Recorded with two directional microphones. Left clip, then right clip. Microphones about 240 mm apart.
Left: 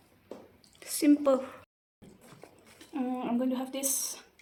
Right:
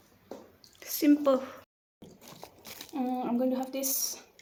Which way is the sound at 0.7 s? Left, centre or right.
Centre.